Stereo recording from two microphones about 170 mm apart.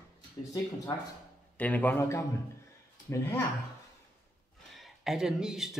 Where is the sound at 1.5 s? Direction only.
10° left (ahead or behind).